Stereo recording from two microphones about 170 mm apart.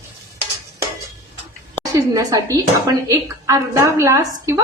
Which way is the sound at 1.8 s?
20° right (ahead or behind).